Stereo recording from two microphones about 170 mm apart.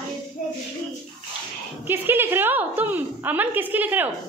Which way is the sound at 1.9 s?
15° right (ahead or behind).